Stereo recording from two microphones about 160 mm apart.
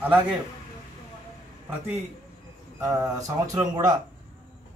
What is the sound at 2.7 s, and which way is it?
Speech, 20° right (ahead or behind).